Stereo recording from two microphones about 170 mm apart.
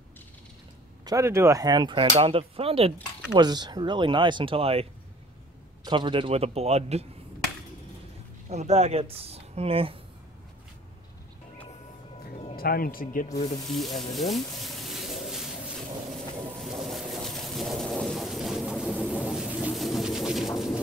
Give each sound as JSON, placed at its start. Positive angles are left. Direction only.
{"t": 1.0, "sound": "speech", "side_deg": -15}
{"t": 3.3, "sound": "speech", "side_deg": -25}
{"t": 5.9, "sound": "speech", "side_deg": -30}
{"t": 8.5, "sound": "speech", "side_deg": -40}
{"t": 12.5, "sound": "speech", "side_deg": 60}
{"t": 13.9, "sound": "a sound", "side_deg": 0}
{"t": 16.5, "sound": "a sound", "side_deg": 0}